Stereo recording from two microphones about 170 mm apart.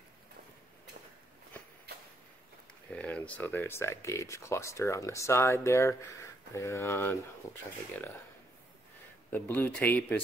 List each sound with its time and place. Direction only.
2.9 s speech: 10° left (ahead or behind)
9.3 s speech: 10° left (ahead or behind)